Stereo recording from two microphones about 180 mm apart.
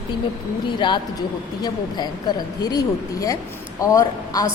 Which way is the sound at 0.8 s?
25° left (ahead or behind).